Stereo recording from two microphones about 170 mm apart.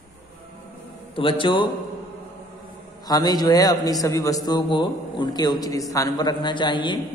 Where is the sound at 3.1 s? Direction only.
20° left (ahead or behind).